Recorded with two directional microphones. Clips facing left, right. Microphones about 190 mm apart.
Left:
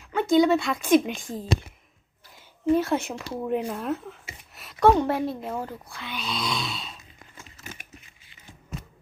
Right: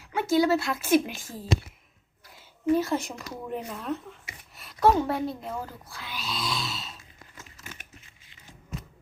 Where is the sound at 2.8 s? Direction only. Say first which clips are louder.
Left 2 dB; centre (ahead or behind).